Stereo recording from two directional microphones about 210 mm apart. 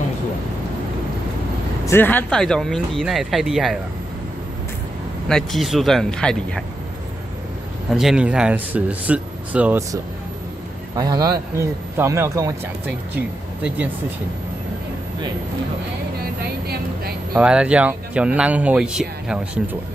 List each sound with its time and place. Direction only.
1.9 s speech: 10° left (ahead or behind)
5.3 s speech: centre (ahead or behind)
7.9 s speech: centre (ahead or behind)
11.0 s speech: 15° right (ahead or behind)
16.6 s vehicle: 50° right (ahead or behind)
17.3 s speech: 5° right (ahead or behind)